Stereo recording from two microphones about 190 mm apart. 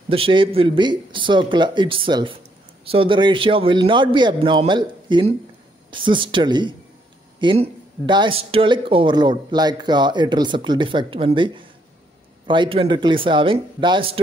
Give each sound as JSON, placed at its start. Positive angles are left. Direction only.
{"t": 0.1, "sound": "speech", "side_deg": -30}